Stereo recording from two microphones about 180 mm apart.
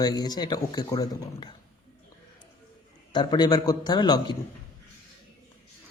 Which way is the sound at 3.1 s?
25° left (ahead or behind).